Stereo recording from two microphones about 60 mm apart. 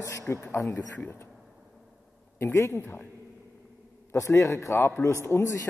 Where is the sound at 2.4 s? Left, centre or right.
Left.